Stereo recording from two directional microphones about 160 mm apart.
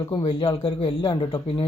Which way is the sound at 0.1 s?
30° left (ahead or behind).